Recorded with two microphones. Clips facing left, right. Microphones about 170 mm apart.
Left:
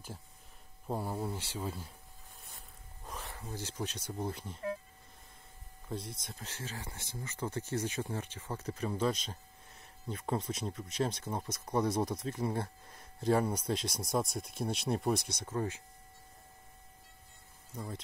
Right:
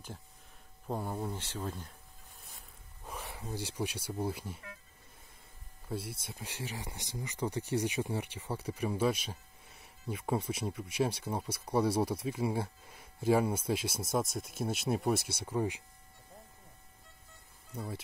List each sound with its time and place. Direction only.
0.8 s speech: 5° left (ahead or behind)
3.1 s speech: 10° right (ahead or behind)
5.9 s speech: 5° right (ahead or behind)
17.7 s speech: 10° right (ahead or behind)